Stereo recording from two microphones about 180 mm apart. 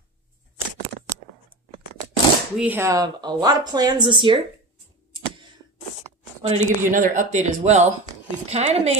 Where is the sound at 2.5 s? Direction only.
10° right (ahead or behind); by 4.4 s 25° right (ahead or behind).